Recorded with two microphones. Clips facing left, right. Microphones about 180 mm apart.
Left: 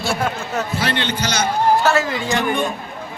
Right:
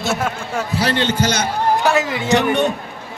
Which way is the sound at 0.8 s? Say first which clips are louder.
Right 8 dB; 40° right (ahead or behind).